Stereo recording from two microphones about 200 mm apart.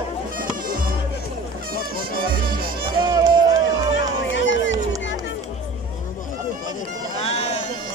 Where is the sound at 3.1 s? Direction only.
20° right (ahead or behind).